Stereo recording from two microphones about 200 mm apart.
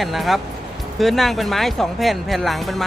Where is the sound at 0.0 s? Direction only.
Centre (ahead or behind).